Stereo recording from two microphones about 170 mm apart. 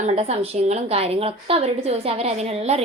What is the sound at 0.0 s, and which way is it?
A woman's voice, 40° right (ahead or behind).